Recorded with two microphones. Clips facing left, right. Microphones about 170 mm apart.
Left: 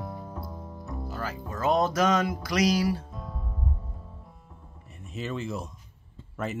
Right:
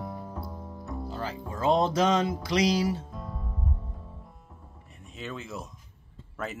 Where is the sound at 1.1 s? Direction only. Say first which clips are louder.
Even; 25° right (ahead or behind).